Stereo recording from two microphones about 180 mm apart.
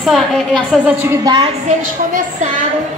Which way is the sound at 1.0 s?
20° right (ahead or behind).